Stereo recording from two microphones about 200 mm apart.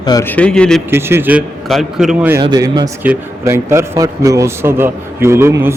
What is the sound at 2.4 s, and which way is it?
A man's voice, 20° right (ahead or behind).